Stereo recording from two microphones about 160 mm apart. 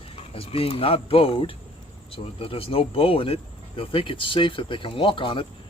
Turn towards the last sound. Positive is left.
turn(degrees=30)  # may be behind; listen again after turning